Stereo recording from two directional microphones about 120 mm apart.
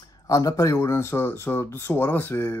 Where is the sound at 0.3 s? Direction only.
25° left (ahead or behind).